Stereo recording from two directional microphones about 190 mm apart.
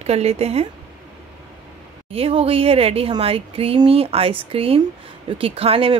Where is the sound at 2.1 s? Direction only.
30° right (ahead or behind).